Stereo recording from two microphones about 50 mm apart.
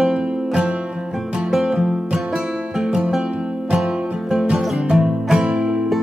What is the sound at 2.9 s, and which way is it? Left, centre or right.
Music, centre.